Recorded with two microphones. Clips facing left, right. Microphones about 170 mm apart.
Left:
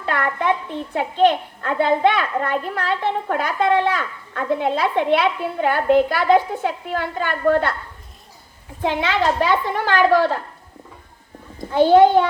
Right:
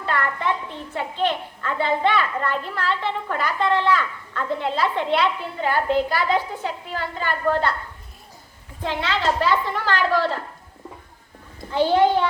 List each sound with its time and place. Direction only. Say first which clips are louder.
0.1 s a sound: left 3 dB; 55° left (ahead or behind)
0.9 s a child's voice: left 7 dB; 50° left (ahead or behind)
8.8 s a woman's voice: left 4 dB; 60° left (ahead or behind)
11.7 s a child's voice: left 6 dB; 50° left (ahead or behind)